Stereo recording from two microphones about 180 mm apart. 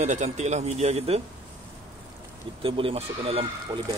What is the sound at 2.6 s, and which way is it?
Speech, 30° right (ahead or behind).